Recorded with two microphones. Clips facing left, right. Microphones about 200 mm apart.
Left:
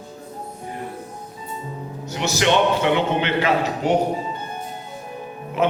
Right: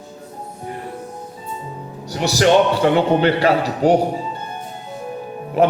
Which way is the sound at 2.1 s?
40° right (ahead or behind).